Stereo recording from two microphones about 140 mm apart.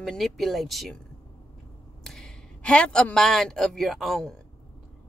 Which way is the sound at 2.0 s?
5° left (ahead or behind).